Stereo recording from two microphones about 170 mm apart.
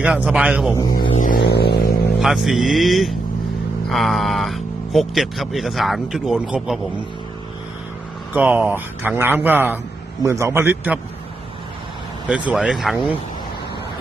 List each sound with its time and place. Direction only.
0.0 s speech: 5° right (ahead or behind)
0.7 s speech: 25° left (ahead or behind)
1.1 s a sound: 50° left (ahead or behind); by 1.9 s 70° left (ahead or behind)
2.2 s speech: centre (ahead or behind)
8.3 s a man's voice: 10° right (ahead or behind)
12.3 s speech: 5° right (ahead or behind)